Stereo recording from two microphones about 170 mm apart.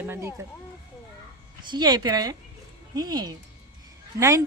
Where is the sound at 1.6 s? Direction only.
25° right (ahead or behind).